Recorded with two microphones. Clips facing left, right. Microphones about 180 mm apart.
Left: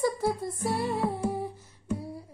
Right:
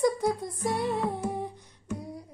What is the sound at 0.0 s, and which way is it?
Music, 5° left (ahead or behind).